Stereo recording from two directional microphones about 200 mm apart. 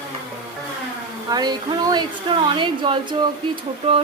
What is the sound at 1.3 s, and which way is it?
Speech, 20° right (ahead or behind).